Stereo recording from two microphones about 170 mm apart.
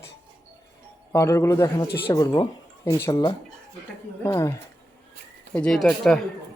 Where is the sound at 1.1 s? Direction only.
15° left (ahead or behind).